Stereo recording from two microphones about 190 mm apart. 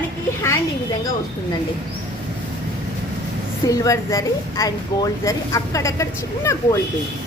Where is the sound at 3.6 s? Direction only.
20° left (ahead or behind).